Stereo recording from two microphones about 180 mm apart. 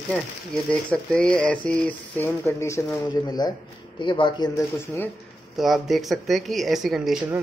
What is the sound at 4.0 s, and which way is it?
Speech, 25° left (ahead or behind).